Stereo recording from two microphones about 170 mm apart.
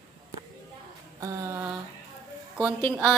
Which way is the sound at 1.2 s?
20° right (ahead or behind).